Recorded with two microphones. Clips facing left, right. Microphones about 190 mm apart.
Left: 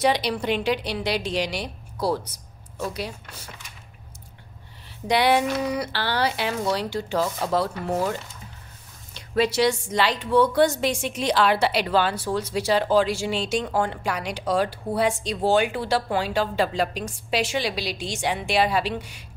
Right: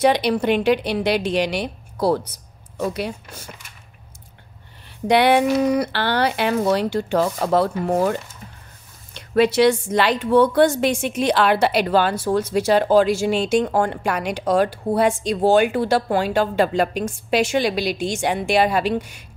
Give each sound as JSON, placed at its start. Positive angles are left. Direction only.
{"t": 0.0, "sound": "speech", "side_deg": -50}
{"t": 5.0, "sound": "speech", "side_deg": -55}
{"t": 9.3, "sound": "a woman's voice", "side_deg": -55}